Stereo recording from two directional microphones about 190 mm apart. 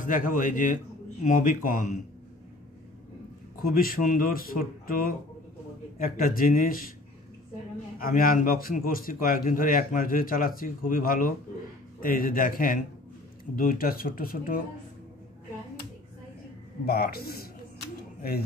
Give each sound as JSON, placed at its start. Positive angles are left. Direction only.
{"t": 0.0, "sound": "a man's voice", "side_deg": 45}
{"t": 3.6, "sound": "a man's voice", "side_deg": 50}
{"t": 8.0, "sound": "a man's voice", "side_deg": 50}
{"t": 16.8, "sound": "a man's voice", "side_deg": 55}